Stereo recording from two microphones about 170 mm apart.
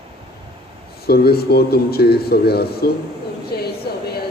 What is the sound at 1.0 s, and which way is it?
Speech, 65° left (ahead or behind).